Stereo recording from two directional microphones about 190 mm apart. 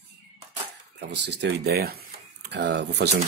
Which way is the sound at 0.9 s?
65° right (ahead or behind).